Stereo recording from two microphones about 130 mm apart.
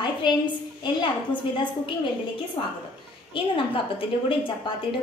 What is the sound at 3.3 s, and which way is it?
Speech, 45° left (ahead or behind).